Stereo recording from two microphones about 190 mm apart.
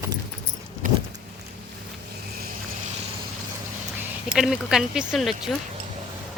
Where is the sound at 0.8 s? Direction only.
45° right (ahead or behind).